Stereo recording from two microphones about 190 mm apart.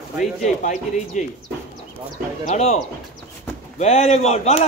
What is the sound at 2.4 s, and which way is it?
Speech, 35° left (ahead or behind).